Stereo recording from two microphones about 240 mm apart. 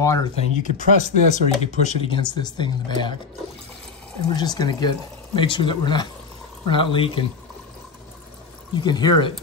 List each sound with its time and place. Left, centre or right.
0.0 s speech: centre
0.6 s speech: left
4.3 s speech: centre
8.7 s speech: centre